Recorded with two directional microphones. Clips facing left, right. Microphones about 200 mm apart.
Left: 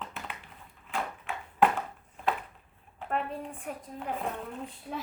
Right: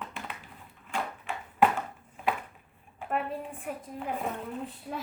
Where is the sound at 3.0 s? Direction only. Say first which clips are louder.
Right 1 dB; 5° right (ahead or behind).